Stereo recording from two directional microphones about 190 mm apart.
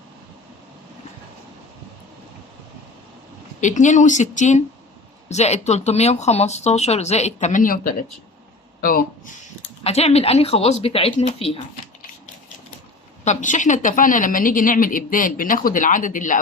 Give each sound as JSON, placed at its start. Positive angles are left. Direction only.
{"t": 3.6, "sound": "speech", "side_deg": 40}
{"t": 8.8, "sound": "speech", "side_deg": 45}
{"t": 9.8, "sound": "speech", "side_deg": 35}
{"t": 13.2, "sound": "a woman's voice", "side_deg": 40}